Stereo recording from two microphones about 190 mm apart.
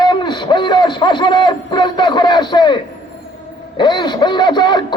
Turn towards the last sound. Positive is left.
turn(degrees=25)  # may be behind; listen again after turning